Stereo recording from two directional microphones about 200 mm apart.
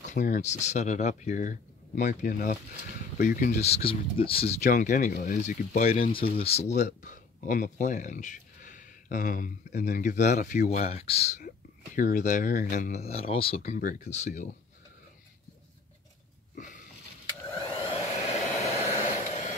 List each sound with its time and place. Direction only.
0.0 s speech: 40° left (ahead or behind)
4.6 s speech: 40° left (ahead or behind)
11.4 s speech: 40° left (ahead or behind)
13.6 s speech: 45° left (ahead or behind)
16.5 s a sound: 40° left (ahead or behind)
17.7 s a sound: 30° left (ahead or behind)
19.0 s vehicle: 35° left (ahead or behind)